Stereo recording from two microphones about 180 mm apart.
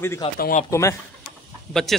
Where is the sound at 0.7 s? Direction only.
15° left (ahead or behind).